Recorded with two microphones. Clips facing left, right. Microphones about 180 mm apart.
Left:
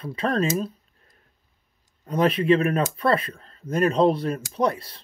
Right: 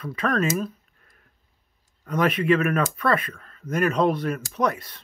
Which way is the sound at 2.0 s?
30° left (ahead or behind).